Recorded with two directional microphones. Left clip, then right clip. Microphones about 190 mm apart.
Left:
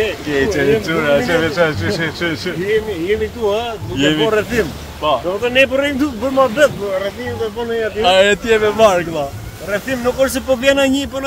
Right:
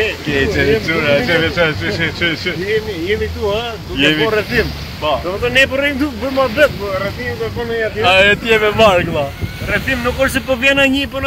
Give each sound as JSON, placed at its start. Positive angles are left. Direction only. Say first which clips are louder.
{"t": 0.3, "sound": "speech", "louder": "even", "side_deg": 0}
{"t": 2.7, "sound": "speech", "louder": "left 2 dB", "side_deg": 20}
{"t": 4.0, "sound": "speech", "louder": "right 1 dB", "side_deg": 5}
{"t": 8.0, "sound": "speech", "louder": "right 1 dB", "side_deg": 5}
{"t": 8.5, "sound": "speech", "louder": "right 1 dB", "side_deg": -5}
{"t": 9.7, "sound": "speech", "louder": "right 1 dB", "side_deg": 20}